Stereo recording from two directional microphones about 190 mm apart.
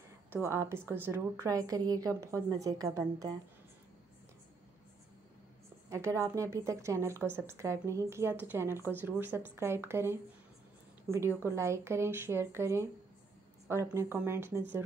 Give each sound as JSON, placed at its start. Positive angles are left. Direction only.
{"t": 0.3, "sound": "speech", "side_deg": -15}
{"t": 5.9, "sound": "speech", "side_deg": -15}